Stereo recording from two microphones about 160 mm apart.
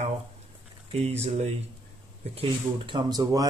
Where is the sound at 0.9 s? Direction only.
40° right (ahead or behind).